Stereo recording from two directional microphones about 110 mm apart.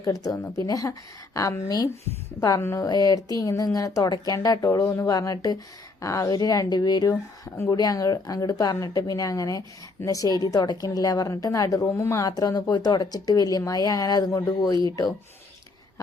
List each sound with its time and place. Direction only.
0.0 s a woman's voice: 30° left (ahead or behind)
7.5 s a woman's voice: 25° left (ahead or behind)